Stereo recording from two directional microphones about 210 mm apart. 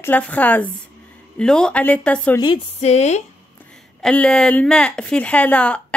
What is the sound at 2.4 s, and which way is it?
Speech, 25° left (ahead or behind).